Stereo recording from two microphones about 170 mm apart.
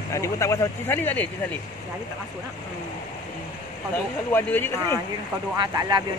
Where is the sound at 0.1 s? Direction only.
15° left (ahead or behind).